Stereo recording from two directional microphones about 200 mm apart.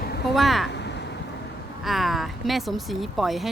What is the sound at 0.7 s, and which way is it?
Vehicle, 60° left (ahead or behind).